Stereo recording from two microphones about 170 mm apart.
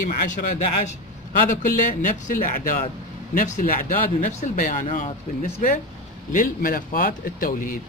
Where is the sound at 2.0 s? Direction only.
50° left (ahead or behind).